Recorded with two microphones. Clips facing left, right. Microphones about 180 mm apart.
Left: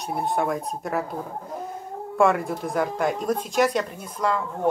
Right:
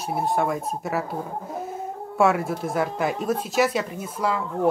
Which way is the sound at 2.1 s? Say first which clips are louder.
Even; 5° right (ahead or behind).